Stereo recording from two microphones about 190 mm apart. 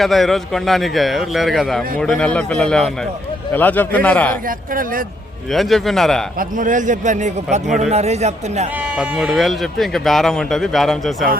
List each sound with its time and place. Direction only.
0.0 s a man's voice: centre (ahead or behind)
4.4 s speech: 45° right (ahead or behind)
5.5 s a man's voice: centre (ahead or behind)
6.4 s a man's voice: 45° right (ahead or behind)
9.0 s a man's voice: 5° right (ahead or behind)